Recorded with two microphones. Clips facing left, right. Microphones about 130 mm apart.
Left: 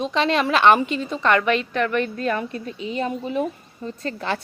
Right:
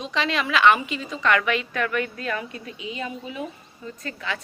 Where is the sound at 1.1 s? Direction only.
30° left (ahead or behind).